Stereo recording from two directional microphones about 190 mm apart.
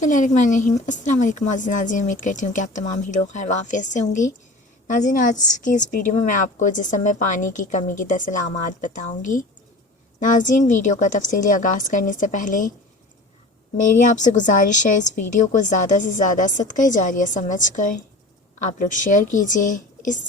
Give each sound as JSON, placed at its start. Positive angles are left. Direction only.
{"t": 0.0, "sound": "a woman's voice", "side_deg": 40}
{"t": 13.9, "sound": "a woman's voice", "side_deg": 40}